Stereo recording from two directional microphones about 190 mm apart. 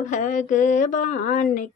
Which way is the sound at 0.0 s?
40° left (ahead or behind).